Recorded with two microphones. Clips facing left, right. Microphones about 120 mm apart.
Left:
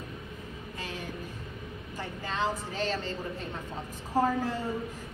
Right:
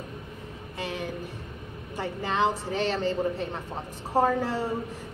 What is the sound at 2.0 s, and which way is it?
Speech, 70° right (ahead or behind).